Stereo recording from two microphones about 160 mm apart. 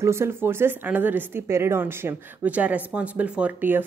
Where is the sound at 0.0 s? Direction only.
15° right (ahead or behind).